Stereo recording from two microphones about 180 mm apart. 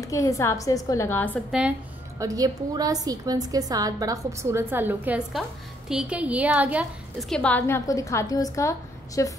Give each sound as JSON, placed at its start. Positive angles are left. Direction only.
{"t": 0.0, "sound": "a woman's voice", "side_deg": 15}
{"t": 1.5, "sound": "speech", "side_deg": -5}
{"t": 2.1, "sound": "a woman's voice", "side_deg": -20}